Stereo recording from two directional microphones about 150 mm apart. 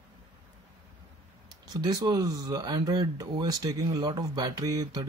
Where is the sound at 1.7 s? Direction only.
25° right (ahead or behind).